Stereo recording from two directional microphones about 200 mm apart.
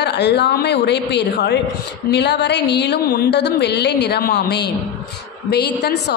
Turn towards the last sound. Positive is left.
turn(degrees=55)  # may be behind; listen again after turning